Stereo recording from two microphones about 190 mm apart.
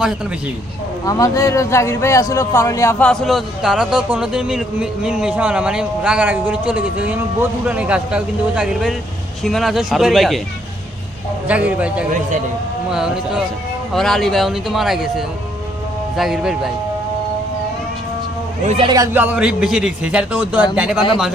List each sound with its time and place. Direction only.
1.0 s speech: 15° left (ahead or behind)
3.1 s a man's voice: centre (ahead or behind)
11.4 s a man's voice: 5° right (ahead or behind)
16.1 s a man's voice: centre (ahead or behind)
18.6 s a man's voice: 35° right (ahead or behind)
19.1 s a man's voice: 10° right (ahead or behind)